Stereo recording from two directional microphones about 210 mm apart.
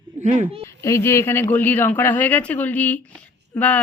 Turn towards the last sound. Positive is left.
turn(degrees=5)  # may be behind; listen again after turning